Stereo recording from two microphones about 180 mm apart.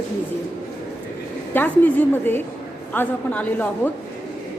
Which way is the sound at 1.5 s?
10° left (ahead or behind).